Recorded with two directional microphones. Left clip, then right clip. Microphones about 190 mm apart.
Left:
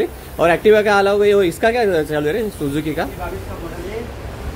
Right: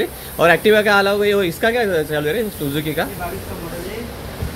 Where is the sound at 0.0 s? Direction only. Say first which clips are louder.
Right 1 dB; 10° left (ahead or behind).